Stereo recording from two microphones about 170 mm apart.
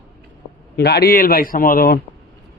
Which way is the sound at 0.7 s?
70° left (ahead or behind).